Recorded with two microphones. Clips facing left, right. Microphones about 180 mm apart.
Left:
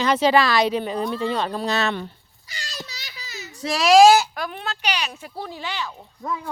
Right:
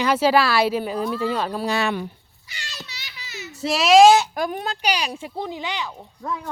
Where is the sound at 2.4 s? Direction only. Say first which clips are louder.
Left 3 dB; 40° left (ahead or behind).